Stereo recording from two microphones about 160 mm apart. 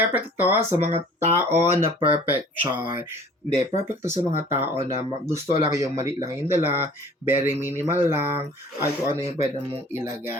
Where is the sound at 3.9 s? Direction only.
15° right (ahead or behind).